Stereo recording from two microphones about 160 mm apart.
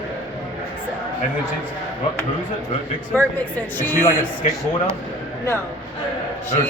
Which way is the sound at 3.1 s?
10° left (ahead or behind).